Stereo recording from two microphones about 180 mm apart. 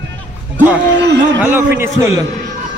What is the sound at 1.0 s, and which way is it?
Speech, 80° right.